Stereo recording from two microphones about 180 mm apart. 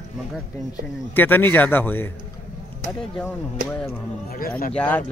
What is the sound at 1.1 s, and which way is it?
Speech, 10° left (ahead or behind).